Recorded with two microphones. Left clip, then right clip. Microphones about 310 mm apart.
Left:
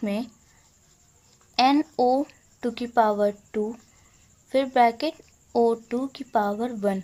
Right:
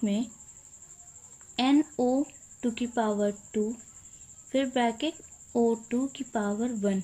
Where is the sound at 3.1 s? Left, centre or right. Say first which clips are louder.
Left 5 dB; left.